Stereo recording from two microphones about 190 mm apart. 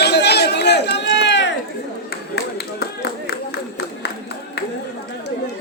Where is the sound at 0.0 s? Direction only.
60° left (ahead or behind).